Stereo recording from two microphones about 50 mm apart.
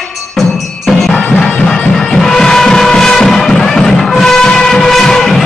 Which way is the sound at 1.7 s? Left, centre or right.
Centre.